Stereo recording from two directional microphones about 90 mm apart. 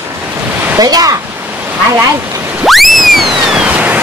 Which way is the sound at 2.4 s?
20° right (ahead or behind).